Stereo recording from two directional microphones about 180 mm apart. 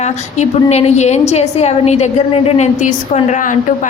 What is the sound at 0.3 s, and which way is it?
A woman's voice, 40° left (ahead or behind).